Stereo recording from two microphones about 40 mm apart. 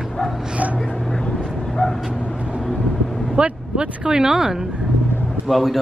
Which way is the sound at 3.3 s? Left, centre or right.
Right.